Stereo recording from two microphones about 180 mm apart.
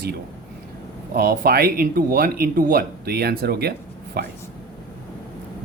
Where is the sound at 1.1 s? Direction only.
55° right (ahead or behind).